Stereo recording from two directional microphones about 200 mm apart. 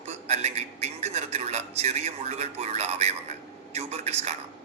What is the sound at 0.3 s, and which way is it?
A man's voice, 30° right (ahead or behind).